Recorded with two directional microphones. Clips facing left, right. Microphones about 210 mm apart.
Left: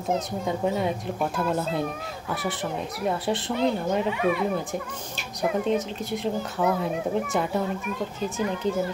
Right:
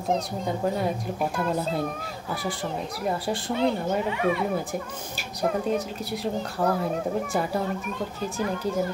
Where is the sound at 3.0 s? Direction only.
Centre (ahead or behind).